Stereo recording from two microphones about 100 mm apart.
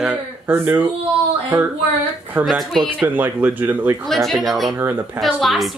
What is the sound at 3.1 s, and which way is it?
Speech, 20° right (ahead or behind).